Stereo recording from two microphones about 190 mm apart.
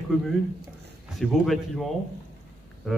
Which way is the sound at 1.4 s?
Centre (ahead or behind).